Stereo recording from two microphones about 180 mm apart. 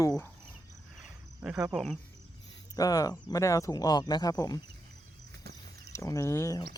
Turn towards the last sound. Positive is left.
turn(degrees=15)  # may be behind; listen again after turning